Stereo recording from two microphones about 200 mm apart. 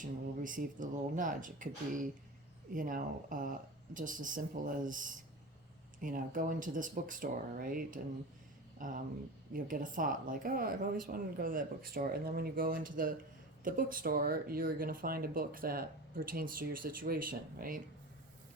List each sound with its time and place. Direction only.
0.0 s speech: 40° right (ahead or behind)